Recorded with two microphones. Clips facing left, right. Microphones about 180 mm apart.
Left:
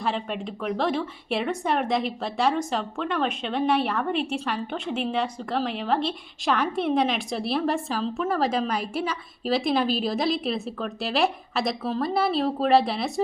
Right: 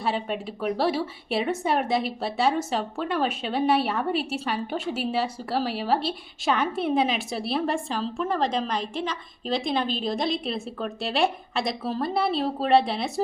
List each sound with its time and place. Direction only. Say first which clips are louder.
0.0 s a woman's voice: right 1 dB; 5° right (ahead or behind)